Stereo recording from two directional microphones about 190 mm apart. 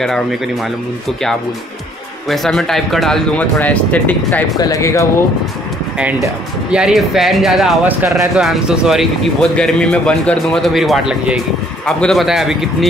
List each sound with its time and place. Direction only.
2.2 s speech: centre (ahead or behind); by 5.0 s 15° left (ahead or behind)
5.9 s speech: 5° right (ahead or behind)